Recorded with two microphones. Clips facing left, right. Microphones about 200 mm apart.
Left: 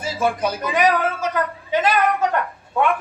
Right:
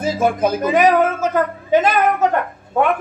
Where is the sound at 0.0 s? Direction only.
45° right (ahead or behind).